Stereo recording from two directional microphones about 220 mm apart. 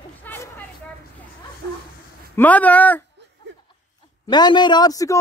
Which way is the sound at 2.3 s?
5° left (ahead or behind).